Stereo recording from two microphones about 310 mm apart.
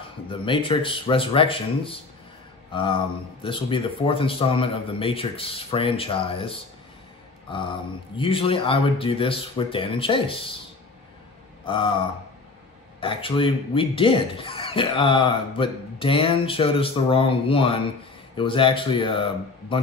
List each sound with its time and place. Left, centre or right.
0.3 s speech: centre
11.6 s speech: centre
13.0 s speech: centre